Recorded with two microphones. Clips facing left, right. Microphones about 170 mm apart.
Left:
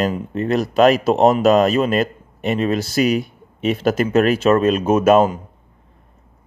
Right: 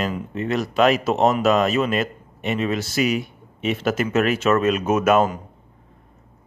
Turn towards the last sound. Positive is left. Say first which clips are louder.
# left 4 dB
turn(degrees=30)  # may be behind; listen again after turning